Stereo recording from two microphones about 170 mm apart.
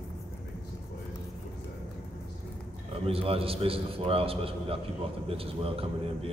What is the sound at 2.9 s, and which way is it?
A man's voice, 35° right (ahead or behind).